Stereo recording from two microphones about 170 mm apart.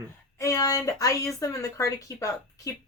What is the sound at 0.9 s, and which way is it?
Speech, 20° left (ahead or behind).